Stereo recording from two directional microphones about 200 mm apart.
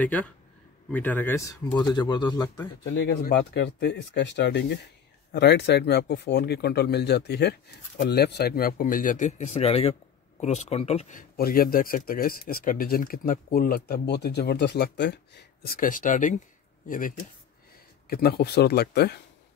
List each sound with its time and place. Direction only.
0.0 s speech: 5° left (ahead or behind)
3.3 s speech: 60° left (ahead or behind)